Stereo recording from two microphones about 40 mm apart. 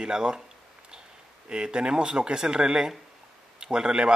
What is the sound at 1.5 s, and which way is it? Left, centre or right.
Speech, right.